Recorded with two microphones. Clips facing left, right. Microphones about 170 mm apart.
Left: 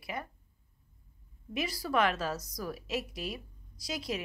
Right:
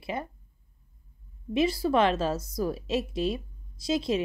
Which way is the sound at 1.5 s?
25° right (ahead or behind).